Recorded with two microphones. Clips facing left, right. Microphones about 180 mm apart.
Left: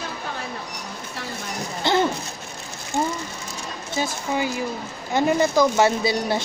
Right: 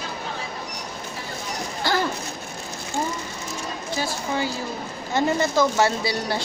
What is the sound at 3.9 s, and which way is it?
A woman's voice, 20° left (ahead or behind).